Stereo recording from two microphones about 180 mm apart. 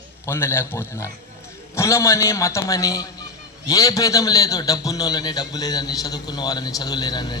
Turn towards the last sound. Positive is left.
turn(degrees=25)  # may be behind; listen again after turning